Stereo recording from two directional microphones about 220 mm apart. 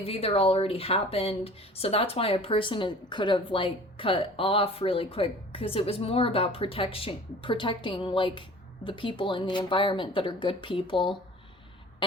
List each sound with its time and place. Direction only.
0.0 s speech: 25° left (ahead or behind)